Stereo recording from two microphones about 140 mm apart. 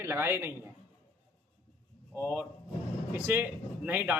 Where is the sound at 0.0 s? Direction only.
15° right (ahead or behind).